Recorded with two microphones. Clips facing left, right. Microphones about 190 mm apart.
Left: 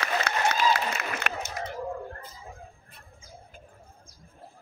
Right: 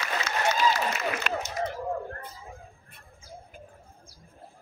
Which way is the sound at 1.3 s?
55° left (ahead or behind).